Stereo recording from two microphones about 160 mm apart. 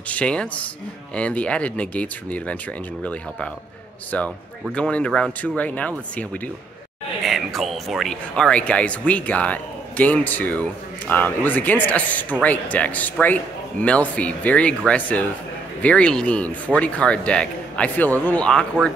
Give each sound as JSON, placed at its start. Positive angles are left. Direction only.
{"t": 0.1, "sound": "speech", "side_deg": 5}
{"t": 4.7, "sound": "speech", "side_deg": 5}